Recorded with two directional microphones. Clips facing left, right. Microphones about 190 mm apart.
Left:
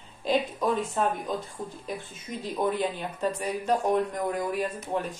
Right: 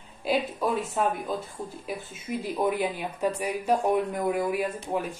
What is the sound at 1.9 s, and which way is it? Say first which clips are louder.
A woman's voice: right 2 dB; 10° right (ahead or behind).